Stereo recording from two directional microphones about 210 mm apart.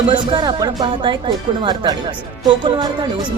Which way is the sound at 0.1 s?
25° right (ahead or behind).